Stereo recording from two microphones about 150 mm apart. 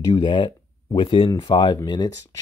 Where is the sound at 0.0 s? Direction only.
30° left (ahead or behind).